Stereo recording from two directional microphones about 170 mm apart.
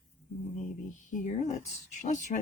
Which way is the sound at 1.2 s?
45° left (ahead or behind).